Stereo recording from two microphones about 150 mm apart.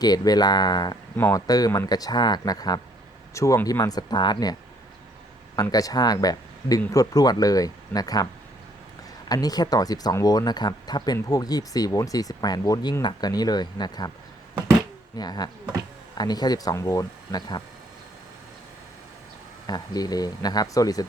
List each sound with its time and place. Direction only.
0.0 s speech: 25° left (ahead or behind)
5.5 s speech: 25° left (ahead or behind)
9.3 s speech: 25° left (ahead or behind)
15.1 s speech: 25° left (ahead or behind)
19.6 s speech: 25° left (ahead or behind)